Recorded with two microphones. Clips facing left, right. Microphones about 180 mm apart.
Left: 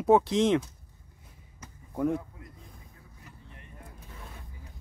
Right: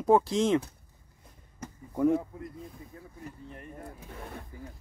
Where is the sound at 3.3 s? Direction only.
45° right (ahead or behind).